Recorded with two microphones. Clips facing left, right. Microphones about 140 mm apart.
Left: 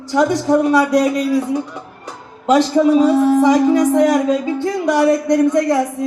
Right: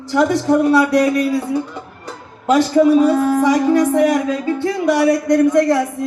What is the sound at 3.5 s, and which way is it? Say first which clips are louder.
Speech: left 1 dB; 20° left (ahead or behind).